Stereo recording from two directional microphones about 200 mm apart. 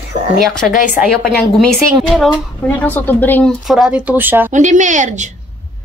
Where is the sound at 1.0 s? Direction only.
Centre (ahead or behind).